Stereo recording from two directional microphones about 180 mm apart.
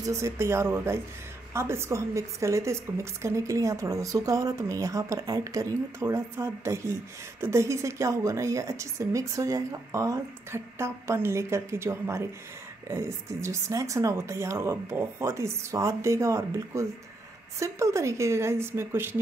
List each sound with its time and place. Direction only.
0.0 s a woman's voice: 15° right (ahead or behind)